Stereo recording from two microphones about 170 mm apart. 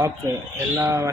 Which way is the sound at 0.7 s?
15° right (ahead or behind).